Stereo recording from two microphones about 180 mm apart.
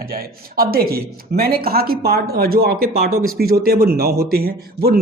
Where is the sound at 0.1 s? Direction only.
55° right (ahead or behind).